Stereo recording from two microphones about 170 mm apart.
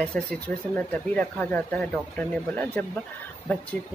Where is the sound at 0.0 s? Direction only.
5° left (ahead or behind).